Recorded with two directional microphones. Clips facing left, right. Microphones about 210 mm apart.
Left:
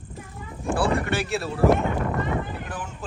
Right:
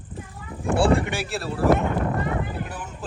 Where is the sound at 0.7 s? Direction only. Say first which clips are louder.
Right 4 dB; 30° right (ahead or behind).